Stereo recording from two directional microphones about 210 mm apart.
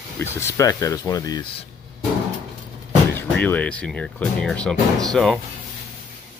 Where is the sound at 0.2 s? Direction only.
10° left (ahead or behind).